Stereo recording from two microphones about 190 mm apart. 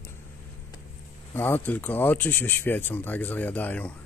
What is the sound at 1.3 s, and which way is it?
Speech, 10° left (ahead or behind).